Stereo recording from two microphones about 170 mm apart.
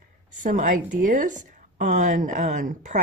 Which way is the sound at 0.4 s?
50° right (ahead or behind).